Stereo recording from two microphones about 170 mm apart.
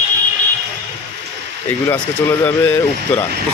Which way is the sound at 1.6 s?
10° left (ahead or behind).